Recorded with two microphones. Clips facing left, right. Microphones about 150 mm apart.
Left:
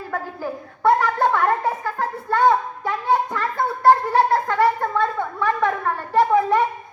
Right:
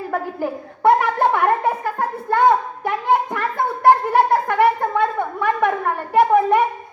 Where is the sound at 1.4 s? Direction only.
60° right (ahead or behind).